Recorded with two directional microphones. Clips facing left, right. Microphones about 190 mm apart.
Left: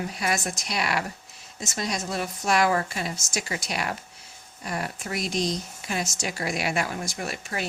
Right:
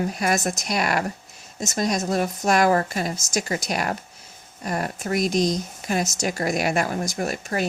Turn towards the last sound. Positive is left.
turn(degrees=-45)  # may be behind; listen again after turning